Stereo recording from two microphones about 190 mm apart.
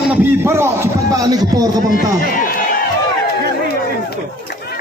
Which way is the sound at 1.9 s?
45° left (ahead or behind).